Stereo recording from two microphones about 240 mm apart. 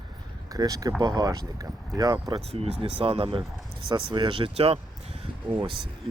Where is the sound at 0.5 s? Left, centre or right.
Centre.